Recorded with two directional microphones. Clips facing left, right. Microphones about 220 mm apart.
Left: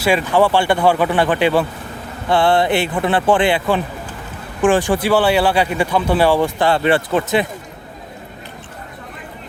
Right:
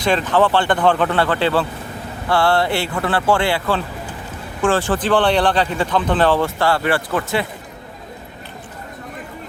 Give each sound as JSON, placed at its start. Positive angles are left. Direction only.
{"t": 0.0, "sound": "speech", "side_deg": 10}